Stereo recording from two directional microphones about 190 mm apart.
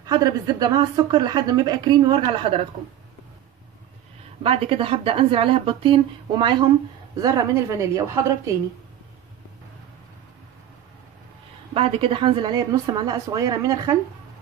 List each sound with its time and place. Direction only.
0.0 s a woman's voice: 20° right (ahead or behind)
4.4 s a woman's voice: 30° right (ahead or behind)
11.7 s a woman's voice: 30° right (ahead or behind)